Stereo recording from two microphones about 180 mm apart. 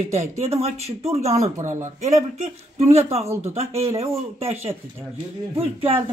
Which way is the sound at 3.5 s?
35° right (ahead or behind).